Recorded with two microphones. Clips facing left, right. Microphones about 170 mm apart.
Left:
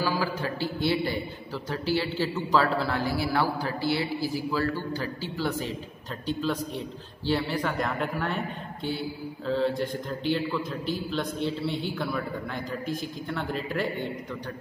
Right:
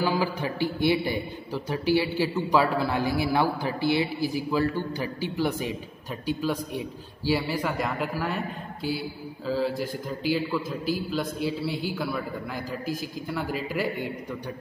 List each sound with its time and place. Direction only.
0.0 s a man's voice: 20° right (ahead or behind)
9.5 s a man's voice: 5° right (ahead or behind)